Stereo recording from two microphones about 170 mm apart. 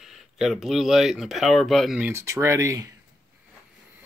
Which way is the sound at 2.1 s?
15° right (ahead or behind).